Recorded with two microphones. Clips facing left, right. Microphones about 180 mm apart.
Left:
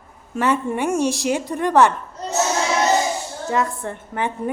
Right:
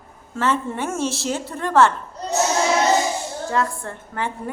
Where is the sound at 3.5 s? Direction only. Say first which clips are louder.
Left 2 dB; 20° left (ahead or behind).